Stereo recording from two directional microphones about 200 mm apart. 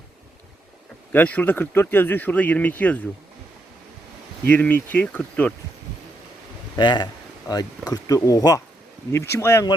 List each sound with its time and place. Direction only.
1.1 s speech: 10° left (ahead or behind)
4.4 s speech: 10° left (ahead or behind)
6.7 s speech: 20° left (ahead or behind)